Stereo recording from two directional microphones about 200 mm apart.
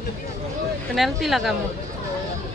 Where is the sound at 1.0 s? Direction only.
Centre (ahead or behind).